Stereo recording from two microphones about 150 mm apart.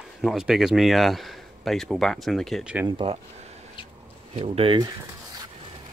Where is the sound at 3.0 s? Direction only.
40° right (ahead or behind).